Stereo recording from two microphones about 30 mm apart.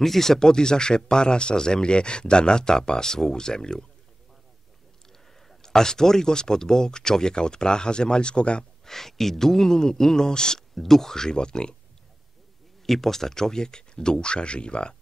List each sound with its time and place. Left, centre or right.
0.0 s a man's voice: centre
0.5 s speech: left
5.5 s speech: centre; by 8.6 s left
8.8 s a man's voice: centre
10.7 s speech: centre; by 11.7 s left
12.8 s speech: centre; by 15.0 s left